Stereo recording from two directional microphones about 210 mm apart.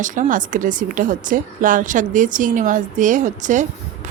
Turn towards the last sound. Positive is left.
turn(degrees=-35)  # may be behind; listen again after turning